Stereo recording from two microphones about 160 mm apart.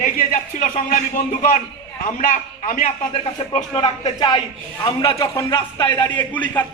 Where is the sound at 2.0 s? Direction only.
55° left (ahead or behind).